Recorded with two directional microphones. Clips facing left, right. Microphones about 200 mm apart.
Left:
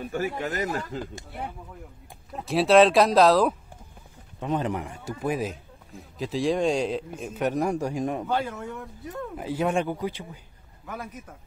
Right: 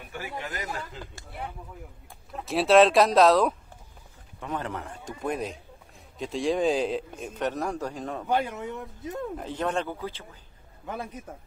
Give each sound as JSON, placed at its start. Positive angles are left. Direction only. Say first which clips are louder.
{"t": 0.1, "sound": "speech", "louder": "left 6 dB", "side_deg": 40}
{"t": 2.3, "sound": "a man's voice", "louder": "left 1 dB", "side_deg": 0}
{"t": 4.4, "sound": "a man's voice", "louder": "left 6 dB", "side_deg": 20}
{"t": 8.3, "sound": "speech", "louder": "right 1 dB", "side_deg": -15}
{"t": 9.4, "sound": "speech", "louder": "left 6 dB", "side_deg": 10}
{"t": 10.9, "sound": "speech", "louder": "right 2 dB", "side_deg": -30}